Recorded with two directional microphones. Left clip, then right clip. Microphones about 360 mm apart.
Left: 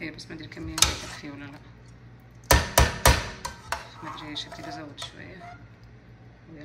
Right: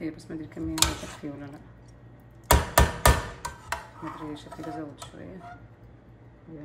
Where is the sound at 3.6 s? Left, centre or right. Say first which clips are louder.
Left 1 dB; centre.